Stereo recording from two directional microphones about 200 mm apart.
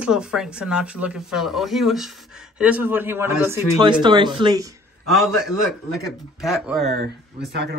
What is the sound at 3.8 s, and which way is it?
Speech, 25° right (ahead or behind).